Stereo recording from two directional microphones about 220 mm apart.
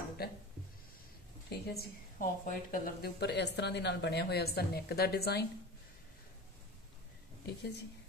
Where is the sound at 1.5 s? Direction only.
45° left (ahead or behind).